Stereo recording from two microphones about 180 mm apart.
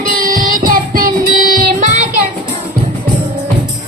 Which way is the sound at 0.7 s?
50° right (ahead or behind).